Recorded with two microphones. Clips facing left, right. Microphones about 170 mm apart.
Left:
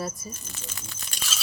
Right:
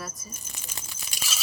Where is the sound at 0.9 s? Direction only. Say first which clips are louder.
Right 1 dB; 10° right (ahead or behind).